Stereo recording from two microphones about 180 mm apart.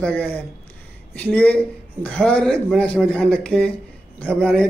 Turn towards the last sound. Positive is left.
turn(degrees=5)  # may be behind; listen again after turning